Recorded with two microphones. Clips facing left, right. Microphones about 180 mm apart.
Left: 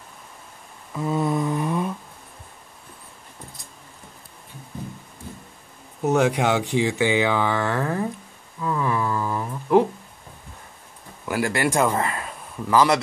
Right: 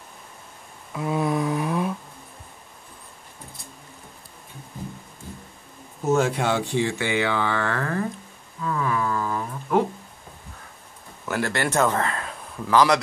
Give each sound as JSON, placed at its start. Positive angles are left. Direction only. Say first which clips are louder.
{"t": 0.9, "sound": "a sound", "louder": "left 1 dB", "side_deg": -5}
{"t": 6.1, "sound": "speech", "louder": "left 2 dB", "side_deg": 15}
{"t": 11.2, "sound": "speech", "louder": "left 2 dB", "side_deg": 10}